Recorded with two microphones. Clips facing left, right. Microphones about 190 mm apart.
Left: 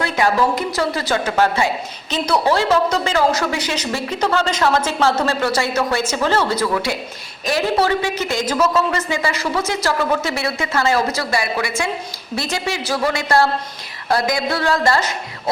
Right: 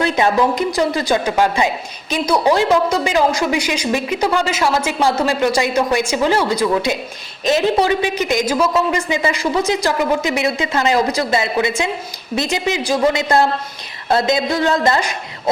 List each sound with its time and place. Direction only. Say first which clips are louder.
0.0 s a woman's voice: right 2 dB; 20° right (ahead or behind)